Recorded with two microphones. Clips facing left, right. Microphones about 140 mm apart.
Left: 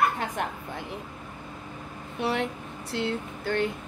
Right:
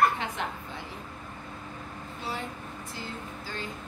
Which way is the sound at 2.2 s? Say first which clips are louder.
Left 9 dB; 70° left (ahead or behind).